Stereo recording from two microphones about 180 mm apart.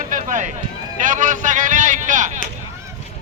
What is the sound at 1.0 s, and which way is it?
A man's voice, 45° right (ahead or behind).